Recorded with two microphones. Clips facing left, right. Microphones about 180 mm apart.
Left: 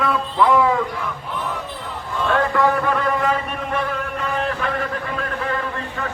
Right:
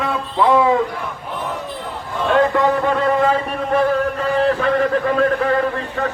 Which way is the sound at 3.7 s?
35° right (ahead or behind).